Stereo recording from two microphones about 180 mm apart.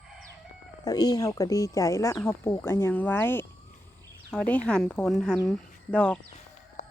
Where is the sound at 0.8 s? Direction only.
20° left (ahead or behind); by 6.1 s 5° left (ahead or behind).